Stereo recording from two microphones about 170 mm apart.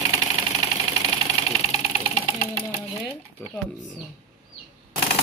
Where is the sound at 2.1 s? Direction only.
35° left (ahead or behind).